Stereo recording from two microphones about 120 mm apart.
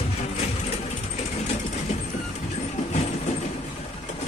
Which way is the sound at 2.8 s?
70° left (ahead or behind).